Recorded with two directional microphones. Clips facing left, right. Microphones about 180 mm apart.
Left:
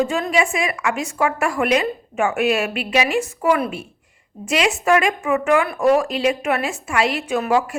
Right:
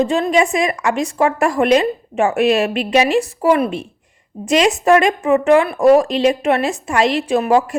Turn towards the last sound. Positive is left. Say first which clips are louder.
# right 4 dB
turn(degrees=-35)  # may be behind; listen again after turning